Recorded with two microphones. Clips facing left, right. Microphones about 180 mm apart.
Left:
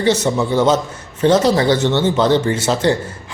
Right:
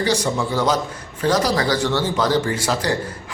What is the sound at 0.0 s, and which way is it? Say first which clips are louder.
A man's voice: left 4 dB; 25° left (ahead or behind).